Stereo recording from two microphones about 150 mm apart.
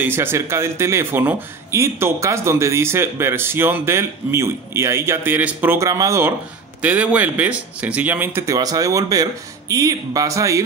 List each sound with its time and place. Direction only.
0.0 s speech: 15° right (ahead or behind)